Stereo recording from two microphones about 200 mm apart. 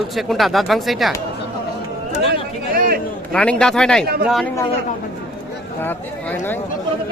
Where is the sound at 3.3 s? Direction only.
5° left (ahead or behind).